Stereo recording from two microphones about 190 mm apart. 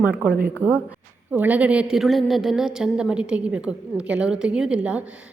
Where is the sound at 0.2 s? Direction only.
10° right (ahead or behind).